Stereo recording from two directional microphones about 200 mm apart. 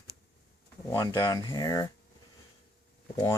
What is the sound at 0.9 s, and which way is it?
Speech, 15° left (ahead or behind).